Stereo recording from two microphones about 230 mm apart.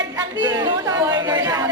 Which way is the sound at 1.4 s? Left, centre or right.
Centre.